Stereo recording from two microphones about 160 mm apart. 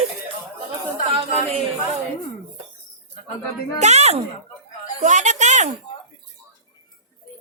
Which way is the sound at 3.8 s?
45° right (ahead or behind).